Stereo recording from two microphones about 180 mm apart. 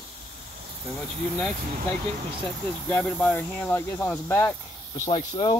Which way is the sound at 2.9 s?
5° left (ahead or behind).